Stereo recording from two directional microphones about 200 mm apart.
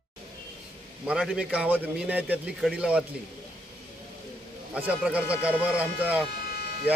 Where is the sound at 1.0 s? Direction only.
5° right (ahead or behind).